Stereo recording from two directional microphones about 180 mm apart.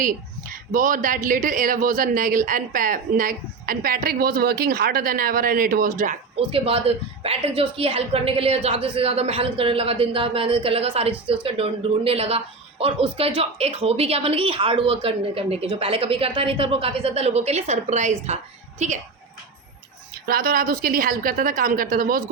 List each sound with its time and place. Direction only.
0.0 s speech: 50° right (ahead or behind)
6.5 s a woman's voice: 30° right (ahead or behind)
20.2 s speech: 55° right (ahead or behind)